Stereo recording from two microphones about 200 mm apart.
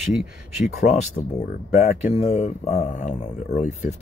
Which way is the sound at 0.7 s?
35° left (ahead or behind).